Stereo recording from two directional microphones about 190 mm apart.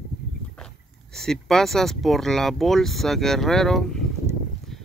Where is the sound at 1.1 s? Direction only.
Centre (ahead or behind).